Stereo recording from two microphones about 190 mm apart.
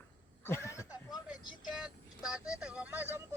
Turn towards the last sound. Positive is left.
turn(degrees=-10)  # may be behind; listen again after turning